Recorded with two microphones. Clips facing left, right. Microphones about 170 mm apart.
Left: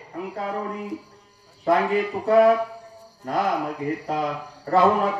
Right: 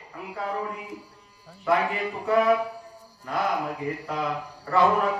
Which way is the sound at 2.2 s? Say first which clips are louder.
Left 6 dB; 40° left (ahead or behind).